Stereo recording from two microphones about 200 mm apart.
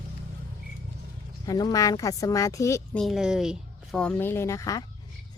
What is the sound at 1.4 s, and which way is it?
A woman's voice, 20° left (ahead or behind).